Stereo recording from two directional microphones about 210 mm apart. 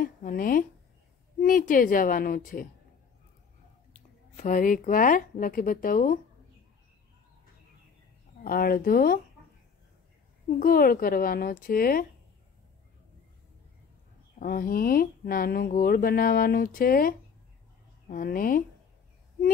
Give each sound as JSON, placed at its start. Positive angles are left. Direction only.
{"t": 0.0, "sound": "speech", "side_deg": 40}
{"t": 4.4, "sound": "speech", "side_deg": 40}
{"t": 8.5, "sound": "speech", "side_deg": 45}
{"t": 10.6, "sound": "speech", "side_deg": 45}
{"t": 14.4, "sound": "speech", "side_deg": 45}